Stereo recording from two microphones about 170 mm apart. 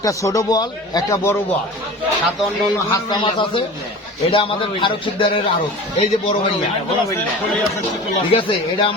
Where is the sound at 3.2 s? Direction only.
30° left (ahead or behind).